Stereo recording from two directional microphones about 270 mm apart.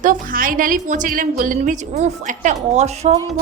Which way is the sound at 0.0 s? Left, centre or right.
Right.